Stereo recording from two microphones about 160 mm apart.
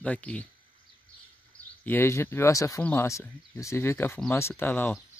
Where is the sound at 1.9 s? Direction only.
15° left (ahead or behind).